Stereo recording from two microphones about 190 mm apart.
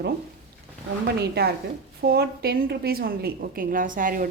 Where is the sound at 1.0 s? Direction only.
55° right (ahead or behind).